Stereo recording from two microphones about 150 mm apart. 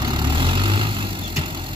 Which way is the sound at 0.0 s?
30° right (ahead or behind).